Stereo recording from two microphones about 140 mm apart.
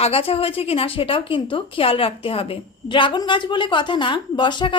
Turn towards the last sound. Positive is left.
turn(degrees=35)  # may be behind; listen again after turning